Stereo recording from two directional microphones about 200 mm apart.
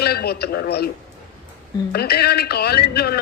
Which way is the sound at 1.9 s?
50° left (ahead or behind).